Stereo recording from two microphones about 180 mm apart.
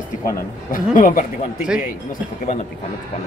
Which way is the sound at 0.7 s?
50° left (ahead or behind).